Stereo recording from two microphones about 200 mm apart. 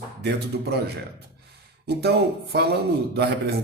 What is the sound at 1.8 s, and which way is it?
A man's voice, 55° right (ahead or behind).